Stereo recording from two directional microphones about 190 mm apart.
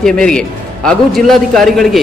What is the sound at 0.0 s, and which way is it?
A man's voice, 5° left (ahead or behind).